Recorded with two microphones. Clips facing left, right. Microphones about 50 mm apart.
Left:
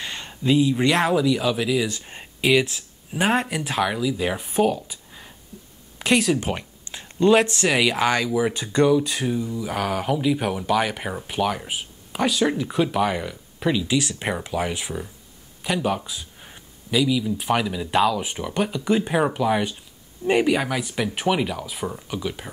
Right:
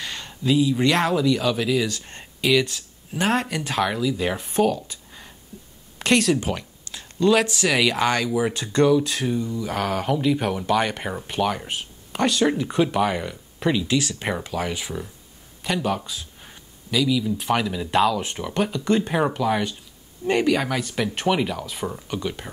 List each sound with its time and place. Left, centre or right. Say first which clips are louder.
0.0 s speech: left 1 dB; centre
6.4 s a sound: even; left
7.6 s speech: even; centre
14.0 s speech: even; centre